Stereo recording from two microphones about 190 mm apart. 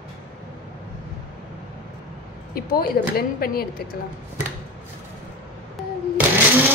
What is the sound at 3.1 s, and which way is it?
Speech, 55° left (ahead or behind).